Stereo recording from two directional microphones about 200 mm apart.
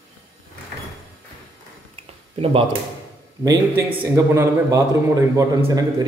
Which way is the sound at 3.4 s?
20° right (ahead or behind).